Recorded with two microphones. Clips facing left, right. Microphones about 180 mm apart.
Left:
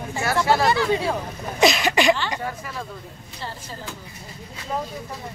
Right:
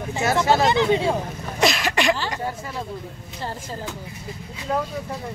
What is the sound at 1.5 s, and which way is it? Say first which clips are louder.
Throat clearing: left 3 dB; centre (ahead or behind).